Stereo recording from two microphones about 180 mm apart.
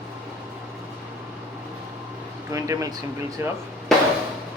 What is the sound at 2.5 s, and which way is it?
Speech, 15° right (ahead or behind).